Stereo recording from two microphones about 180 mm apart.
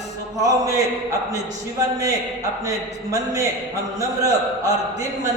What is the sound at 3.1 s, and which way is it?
A man's voice, 20° right (ahead or behind).